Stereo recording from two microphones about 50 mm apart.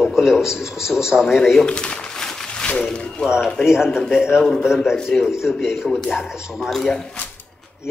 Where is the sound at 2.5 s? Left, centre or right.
Left.